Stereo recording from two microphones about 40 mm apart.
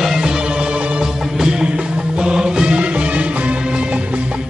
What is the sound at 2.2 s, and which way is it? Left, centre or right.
Music, centre.